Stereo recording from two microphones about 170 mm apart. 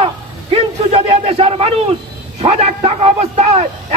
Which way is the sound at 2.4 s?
40° right (ahead or behind).